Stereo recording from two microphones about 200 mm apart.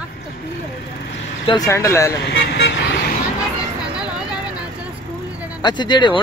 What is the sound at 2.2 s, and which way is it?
Vehicle, 60° left (ahead or behind).